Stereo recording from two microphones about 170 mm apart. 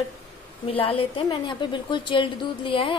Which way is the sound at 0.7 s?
35° left (ahead or behind).